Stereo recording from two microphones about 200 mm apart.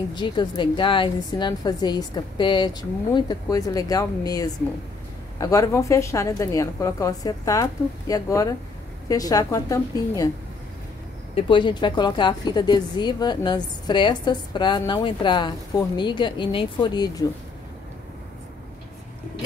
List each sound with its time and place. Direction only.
0.1 s a woman's voice: 20° left (ahead or behind)
11.3 s a woman's voice: 25° left (ahead or behind)